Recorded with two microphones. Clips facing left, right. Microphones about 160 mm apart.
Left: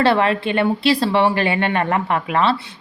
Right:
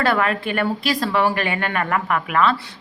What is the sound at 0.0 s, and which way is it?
A woman's voice, 30° left (ahead or behind).